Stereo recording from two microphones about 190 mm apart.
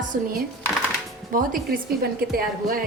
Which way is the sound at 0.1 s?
50° right (ahead or behind).